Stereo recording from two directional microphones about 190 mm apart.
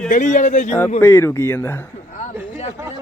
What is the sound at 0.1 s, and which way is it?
Speech, 40° left (ahead or behind).